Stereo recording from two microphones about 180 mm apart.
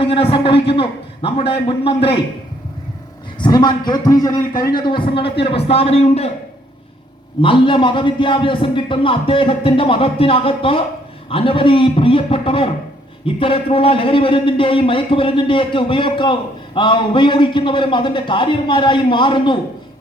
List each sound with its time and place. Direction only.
0.0 s a man's voice: 30° left (ahead or behind)
3.3 s a man's voice: 25° left (ahead or behind)
7.4 s a man's voice: 30° left (ahead or behind)